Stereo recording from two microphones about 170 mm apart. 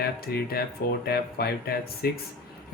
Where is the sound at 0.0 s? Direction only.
65° left (ahead or behind).